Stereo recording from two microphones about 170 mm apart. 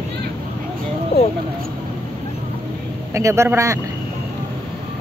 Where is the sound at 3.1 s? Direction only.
15° right (ahead or behind).